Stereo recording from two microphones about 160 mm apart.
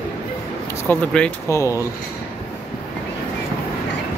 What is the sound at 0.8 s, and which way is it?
Speech, 5° left (ahead or behind).